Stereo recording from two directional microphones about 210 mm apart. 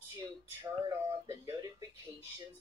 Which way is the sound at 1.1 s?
15° right (ahead or behind).